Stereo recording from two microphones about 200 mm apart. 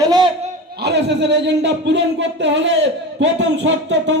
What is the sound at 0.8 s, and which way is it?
Speech, 60° right (ahead or behind).